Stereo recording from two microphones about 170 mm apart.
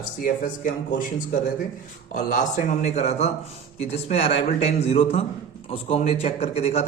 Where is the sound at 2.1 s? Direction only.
45° left (ahead or behind).